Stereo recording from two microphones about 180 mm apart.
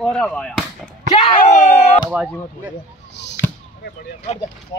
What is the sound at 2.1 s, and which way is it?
Speech, 5° right (ahead or behind).